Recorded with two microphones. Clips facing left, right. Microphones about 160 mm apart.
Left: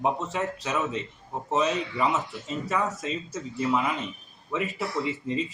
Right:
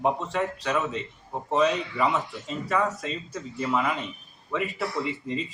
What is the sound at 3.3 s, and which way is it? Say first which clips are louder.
Speech: left 2 dB; 10° left (ahead or behind).